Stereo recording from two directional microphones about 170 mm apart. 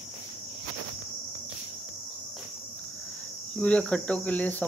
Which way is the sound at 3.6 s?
5° left (ahead or behind).